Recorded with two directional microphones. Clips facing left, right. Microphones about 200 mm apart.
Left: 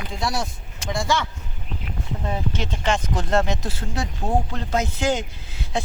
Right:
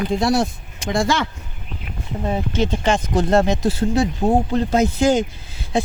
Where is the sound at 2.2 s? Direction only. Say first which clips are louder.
Right 7 dB; 30° right (ahead or behind).